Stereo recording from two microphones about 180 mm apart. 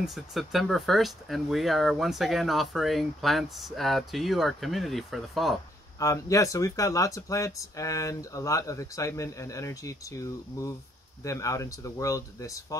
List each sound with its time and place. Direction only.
0.0 s speech: centre (ahead or behind)
5.9 s speech: 20° left (ahead or behind)